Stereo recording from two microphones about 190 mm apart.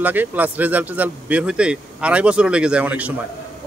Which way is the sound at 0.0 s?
10° right (ahead or behind).